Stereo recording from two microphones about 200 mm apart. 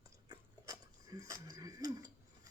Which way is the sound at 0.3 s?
15° right (ahead or behind).